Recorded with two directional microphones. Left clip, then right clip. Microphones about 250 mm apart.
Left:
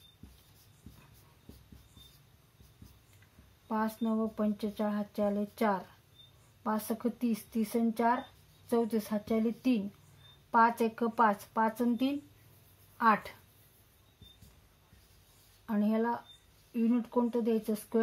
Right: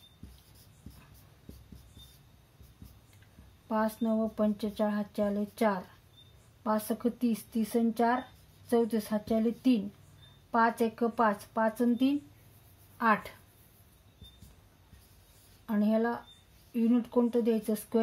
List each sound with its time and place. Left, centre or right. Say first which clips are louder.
3.6 s speech: right 3 dB; centre
15.6 s speech: right 2 dB; centre